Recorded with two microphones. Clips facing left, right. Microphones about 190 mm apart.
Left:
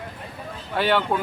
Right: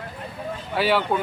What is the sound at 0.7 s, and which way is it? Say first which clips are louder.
Speech: even; 5° right (ahead or behind).